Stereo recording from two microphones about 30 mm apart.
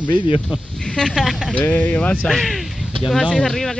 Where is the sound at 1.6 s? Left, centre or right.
Left.